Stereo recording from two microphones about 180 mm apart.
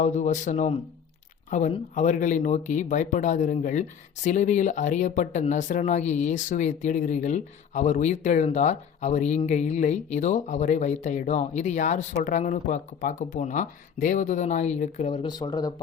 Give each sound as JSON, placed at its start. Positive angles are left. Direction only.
{"t": 0.0, "sound": "speech", "side_deg": 40}